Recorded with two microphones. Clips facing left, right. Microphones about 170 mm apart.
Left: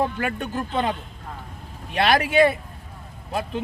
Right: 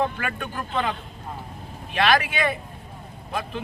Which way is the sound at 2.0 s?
35° left (ahead or behind).